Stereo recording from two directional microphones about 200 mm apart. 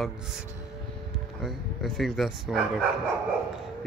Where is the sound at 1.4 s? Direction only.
Centre (ahead or behind).